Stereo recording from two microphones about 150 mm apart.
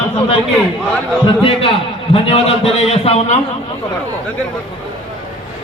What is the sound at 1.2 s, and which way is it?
A man's voice, 35° left (ahead or behind).